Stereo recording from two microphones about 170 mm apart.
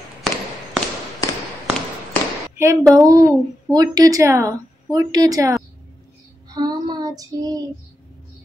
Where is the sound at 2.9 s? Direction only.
20° right (ahead or behind).